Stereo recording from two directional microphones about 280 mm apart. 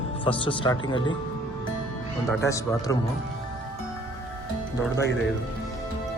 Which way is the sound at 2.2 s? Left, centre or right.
Centre.